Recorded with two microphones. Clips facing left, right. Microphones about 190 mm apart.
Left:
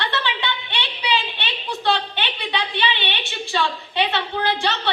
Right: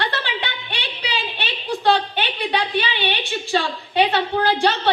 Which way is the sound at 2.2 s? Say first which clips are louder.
Right 4 dB; 45° right (ahead or behind).